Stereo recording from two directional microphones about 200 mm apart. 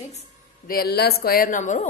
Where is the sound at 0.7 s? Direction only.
50° left (ahead or behind).